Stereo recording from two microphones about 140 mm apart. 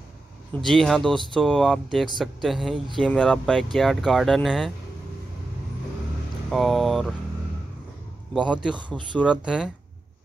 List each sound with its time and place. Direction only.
0.6 s speech: centre (ahead or behind)
6.5 s speech: centre (ahead or behind)
8.7 s speech: 35° right (ahead or behind)
9.3 s speech: 5° right (ahead or behind)